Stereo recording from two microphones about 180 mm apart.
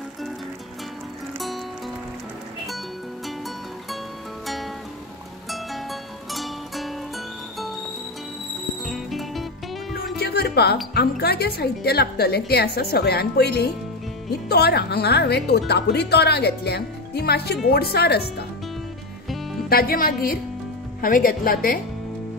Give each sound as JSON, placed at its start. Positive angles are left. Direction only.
{"t": 5.5, "sound": "music", "side_deg": 0}
{"t": 8.8, "sound": "music", "side_deg": 0}
{"t": 10.1, "sound": "music", "side_deg": 60}
{"t": 11.0, "sound": "speech", "side_deg": 60}
{"t": 19.7, "sound": "speech", "side_deg": 55}